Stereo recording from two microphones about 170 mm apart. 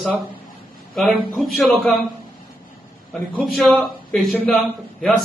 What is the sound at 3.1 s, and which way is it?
A man's voice, centre (ahead or behind).